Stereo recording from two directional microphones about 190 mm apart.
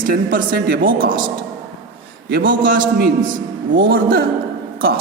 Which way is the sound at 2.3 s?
55° right (ahead or behind).